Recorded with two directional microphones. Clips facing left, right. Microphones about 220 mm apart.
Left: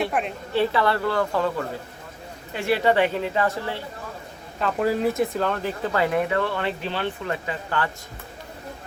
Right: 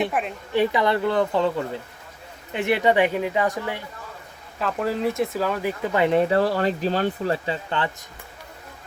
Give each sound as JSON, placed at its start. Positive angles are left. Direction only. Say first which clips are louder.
{"t": 0.1, "sound": "a woman's voice", "louder": "even", "side_deg": 0}
{"t": 0.5, "sound": "speech", "louder": "right 1 dB", "side_deg": -15}
{"t": 4.6, "sound": "speech", "louder": "left 2 dB", "side_deg": 0}